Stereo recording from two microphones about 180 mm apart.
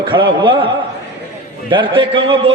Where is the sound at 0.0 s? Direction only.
25° right (ahead or behind).